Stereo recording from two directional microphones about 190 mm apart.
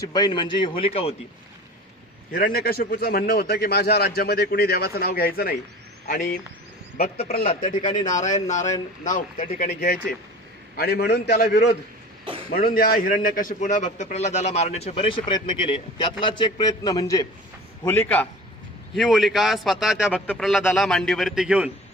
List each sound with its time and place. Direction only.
0.0 s a man's voice: 20° left (ahead or behind)
2.3 s a man's voice: 50° left (ahead or behind)
7.4 s a man's voice: 25° left (ahead or behind)
8.0 s a man's voice: 40° left (ahead or behind); by 11.7 s 60° left (ahead or behind)
12.7 s speech: 50° left (ahead or behind); by 17.3 s 20° left (ahead or behind)
17.8 s a man's voice: 10° left (ahead or behind)